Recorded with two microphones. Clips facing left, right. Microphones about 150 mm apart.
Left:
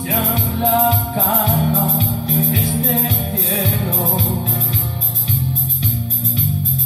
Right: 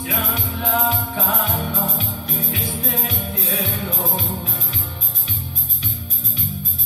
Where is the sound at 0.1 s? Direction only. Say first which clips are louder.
Left 7 dB; 30° left (ahead or behind).